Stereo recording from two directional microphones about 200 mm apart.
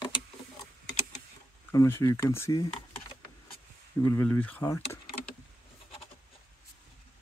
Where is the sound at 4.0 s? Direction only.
10° left (ahead or behind).